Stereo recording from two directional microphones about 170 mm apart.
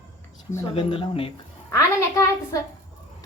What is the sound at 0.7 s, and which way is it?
Speech, 30° left (ahead or behind).